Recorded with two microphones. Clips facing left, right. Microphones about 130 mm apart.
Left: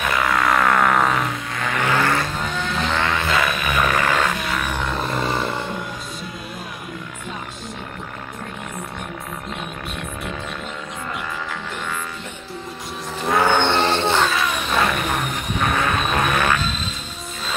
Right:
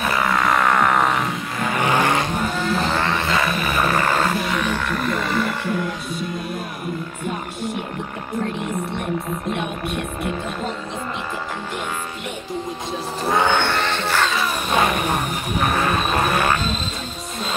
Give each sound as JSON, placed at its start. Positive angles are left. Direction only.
{"t": 0.1, "sound": "vehicle", "side_deg": 0}
{"t": 1.7, "sound": "vehicle", "side_deg": -15}
{"t": 2.6, "sound": "vehicle", "side_deg": -5}
{"t": 3.3, "sound": "music", "side_deg": -25}
{"t": 3.6, "sound": "a sound", "side_deg": -5}
{"t": 4.2, "sound": "roar", "side_deg": 0}
{"t": 4.6, "sound": "a sound", "side_deg": 15}
{"t": 13.3, "sound": "a sound", "side_deg": 0}
{"t": 13.6, "sound": "music", "side_deg": 25}
{"t": 14.2, "sound": "vehicle", "side_deg": 0}
{"t": 15.6, "sound": "vehicle", "side_deg": 0}